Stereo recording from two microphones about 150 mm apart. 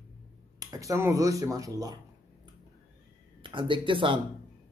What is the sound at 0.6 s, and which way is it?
Speech, 25° right (ahead or behind).